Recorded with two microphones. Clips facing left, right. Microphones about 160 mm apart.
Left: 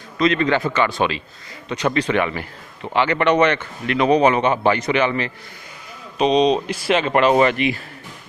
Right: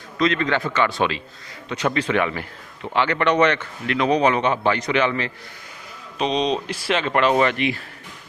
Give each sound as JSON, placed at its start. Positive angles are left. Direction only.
{"t": 0.2, "sound": "a man's voice", "side_deg": 5}